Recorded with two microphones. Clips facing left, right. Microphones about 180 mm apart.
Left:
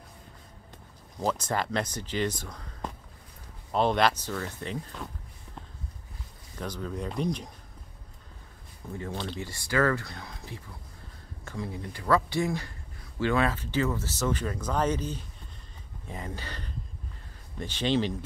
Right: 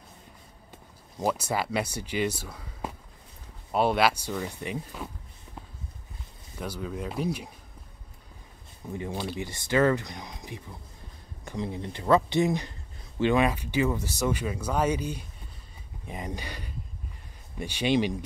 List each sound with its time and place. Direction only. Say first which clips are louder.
1.2 s speech: right 1 dB; 10° right (ahead or behind)
6.5 s speech: right 1 dB; 10° right (ahead or behind)
8.9 s speech: right 2 dB; 15° right (ahead or behind)